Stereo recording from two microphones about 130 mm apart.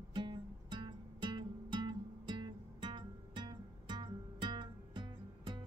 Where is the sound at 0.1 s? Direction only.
35° right (ahead or behind).